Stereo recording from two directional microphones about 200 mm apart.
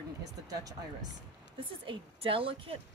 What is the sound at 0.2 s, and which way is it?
Speech, 20° right (ahead or behind).